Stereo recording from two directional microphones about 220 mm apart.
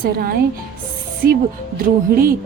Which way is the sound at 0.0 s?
45° right (ahead or behind).